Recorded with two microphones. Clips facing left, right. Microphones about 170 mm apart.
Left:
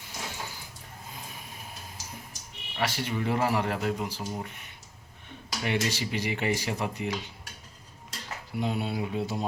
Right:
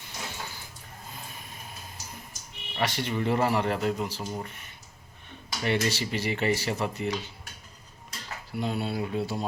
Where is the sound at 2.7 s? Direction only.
5° left (ahead or behind).